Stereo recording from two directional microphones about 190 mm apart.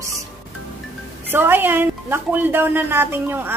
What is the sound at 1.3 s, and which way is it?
Speech, 10° right (ahead or behind).